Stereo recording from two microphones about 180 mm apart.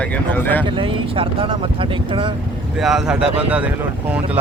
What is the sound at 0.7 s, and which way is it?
Speech, 30° right (ahead or behind).